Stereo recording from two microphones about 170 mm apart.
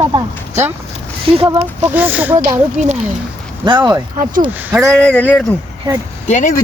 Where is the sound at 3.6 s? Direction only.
30° right (ahead or behind).